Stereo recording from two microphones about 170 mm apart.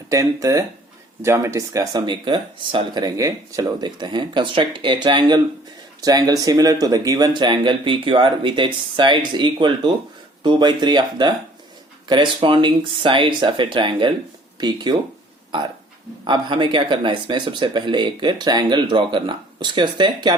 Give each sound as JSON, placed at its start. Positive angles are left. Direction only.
{"t": 0.1, "sound": "speech", "side_deg": -20}